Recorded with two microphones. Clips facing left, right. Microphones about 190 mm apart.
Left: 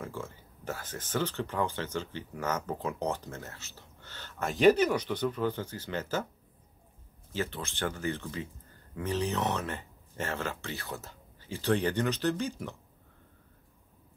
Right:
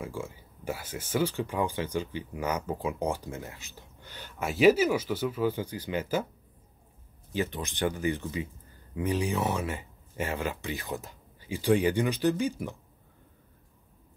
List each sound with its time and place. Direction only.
0.0 s speech: 10° right (ahead or behind)
7.3 s speech: 15° right (ahead or behind)